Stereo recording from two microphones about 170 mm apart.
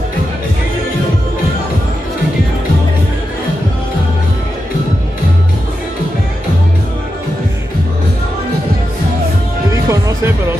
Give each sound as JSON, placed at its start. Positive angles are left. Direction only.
{"t": 9.7, "sound": "music", "side_deg": -20}